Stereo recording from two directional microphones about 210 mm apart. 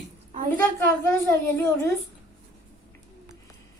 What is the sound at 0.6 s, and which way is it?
A woman's voice, 10° left (ahead or behind).